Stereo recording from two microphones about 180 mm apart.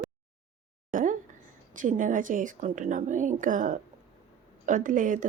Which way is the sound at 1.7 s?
45° right (ahead or behind).